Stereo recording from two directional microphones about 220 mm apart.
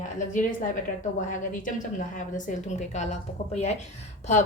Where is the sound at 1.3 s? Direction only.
35° left (ahead or behind).